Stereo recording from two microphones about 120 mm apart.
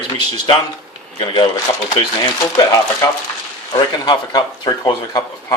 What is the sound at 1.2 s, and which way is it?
Speech, 40° left (ahead or behind).